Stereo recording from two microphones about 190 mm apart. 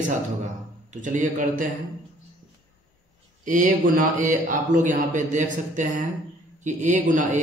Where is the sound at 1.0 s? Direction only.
45° right (ahead or behind).